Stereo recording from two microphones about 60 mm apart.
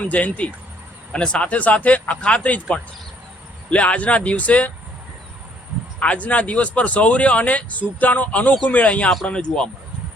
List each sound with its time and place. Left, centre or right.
0.0 s speech: left
6.0 s speech: left